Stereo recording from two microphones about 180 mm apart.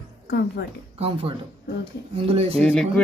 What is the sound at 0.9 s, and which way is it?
Speech, 30° right (ahead or behind).